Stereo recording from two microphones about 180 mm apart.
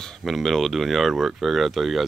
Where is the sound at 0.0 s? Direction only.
Centre (ahead or behind).